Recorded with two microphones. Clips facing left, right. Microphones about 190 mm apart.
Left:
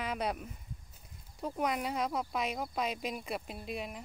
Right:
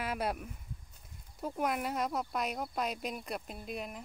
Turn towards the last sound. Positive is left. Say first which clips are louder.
# left 1 dB
turn(degrees=0)  # may be behind; listen again after turning